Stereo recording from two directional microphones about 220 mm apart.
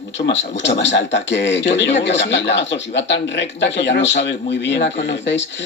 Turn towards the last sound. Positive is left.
turn(degrees=55)  # may be behind; listen again after turning